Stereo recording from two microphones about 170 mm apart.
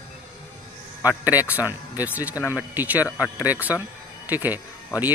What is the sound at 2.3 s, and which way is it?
Speech, 15° left (ahead or behind).